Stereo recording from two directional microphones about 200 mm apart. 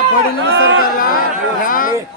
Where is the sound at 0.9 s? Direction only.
45° left (ahead or behind).